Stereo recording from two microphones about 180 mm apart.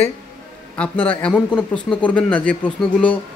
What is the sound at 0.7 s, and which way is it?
Speech, 5° left (ahead or behind).